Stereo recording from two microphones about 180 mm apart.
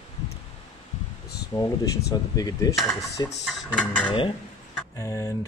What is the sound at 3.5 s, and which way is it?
Speech, 5° left (ahead or behind).